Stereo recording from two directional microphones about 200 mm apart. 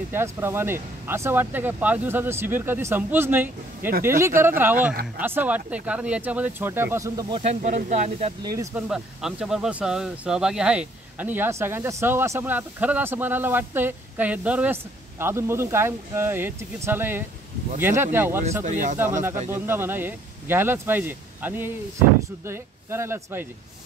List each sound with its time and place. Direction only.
0.1 s speech: 10° right (ahead or behind)
7.3 s speech: 35° right (ahead or behind)
8.4 s speech: 20° right (ahead or behind)
8.7 s speech: 5° right (ahead or behind)
18.6 s speech: 40° right (ahead or behind)
19.6 s speech: 10° right (ahead or behind)